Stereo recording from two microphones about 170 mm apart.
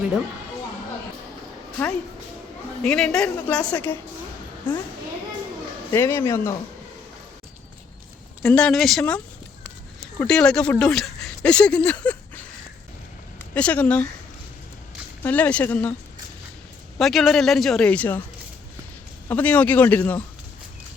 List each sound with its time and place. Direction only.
2.8 s a man's voice: 5° left (ahead or behind)
5.9 s a man's voice: 15° left (ahead or behind)
8.4 s a man's voice: 5° left (ahead or behind)
13.5 s a man's voice: 10° left (ahead or behind)
15.2 s a man's voice: 10° left (ahead or behind)
17.0 s a man's voice: centre (ahead or behind)
19.3 s a man's voice: 10° left (ahead or behind)